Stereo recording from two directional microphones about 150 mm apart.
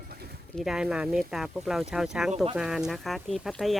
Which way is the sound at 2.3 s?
40° right (ahead or behind).